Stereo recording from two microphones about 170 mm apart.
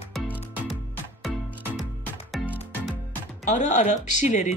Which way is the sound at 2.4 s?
Centre (ahead or behind).